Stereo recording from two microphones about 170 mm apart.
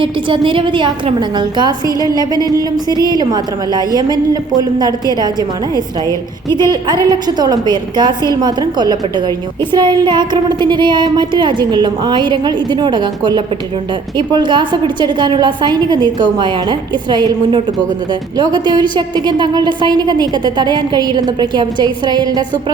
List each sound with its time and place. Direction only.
0.0 s a woman's voice: 30° right (ahead or behind)
1.9 s a woman's voice: 20° left (ahead or behind)
2.1 s a woman's voice: 25° right (ahead or behind)
2.9 s a woman's voice: 20° left (ahead or behind)
3.2 s a woman's voice: 25° right (ahead or behind)
6.1 s a woman's voice: 15° left (ahead or behind)
6.7 s a woman's voice: 25° right (ahead or behind)